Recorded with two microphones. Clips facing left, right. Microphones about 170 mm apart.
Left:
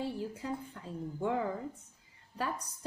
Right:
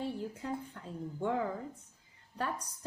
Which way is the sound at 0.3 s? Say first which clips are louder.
Even; 5° left (ahead or behind).